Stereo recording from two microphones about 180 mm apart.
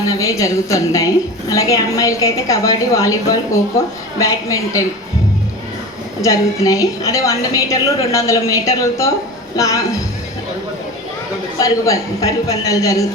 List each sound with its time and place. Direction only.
0.1 s a woman's voice: 20° left (ahead or behind)
6.2 s a woman's voice: 20° left (ahead or behind)
11.6 s a man's voice: 20° left (ahead or behind)